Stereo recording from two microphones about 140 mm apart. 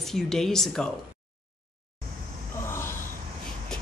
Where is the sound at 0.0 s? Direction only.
5° left (ahead or behind).